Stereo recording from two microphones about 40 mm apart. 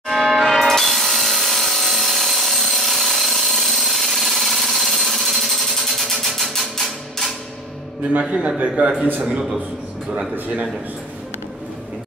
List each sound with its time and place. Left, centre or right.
0.1 s change ringing: centre
0.5 s wood: centre
8.1 s a man's voice: right